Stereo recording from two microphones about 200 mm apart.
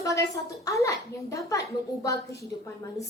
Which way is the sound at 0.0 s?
15° left (ahead or behind).